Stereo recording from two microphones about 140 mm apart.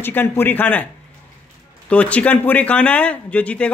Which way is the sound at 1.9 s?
10° left (ahead or behind).